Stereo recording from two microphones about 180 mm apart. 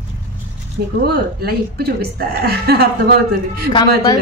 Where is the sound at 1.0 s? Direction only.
60° right (ahead or behind).